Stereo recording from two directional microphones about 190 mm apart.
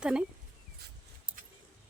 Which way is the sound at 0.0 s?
5° right (ahead or behind).